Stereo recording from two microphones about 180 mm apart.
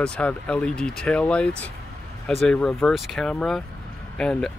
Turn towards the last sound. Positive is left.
turn(degrees=5)  # may be behind; listen again after turning